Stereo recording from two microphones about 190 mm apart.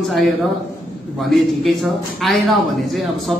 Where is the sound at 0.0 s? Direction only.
Centre (ahead or behind).